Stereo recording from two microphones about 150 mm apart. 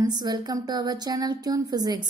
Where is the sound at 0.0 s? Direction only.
25° right (ahead or behind).